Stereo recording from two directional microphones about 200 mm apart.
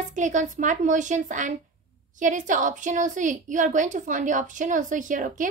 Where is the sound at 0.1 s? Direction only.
40° right (ahead or behind).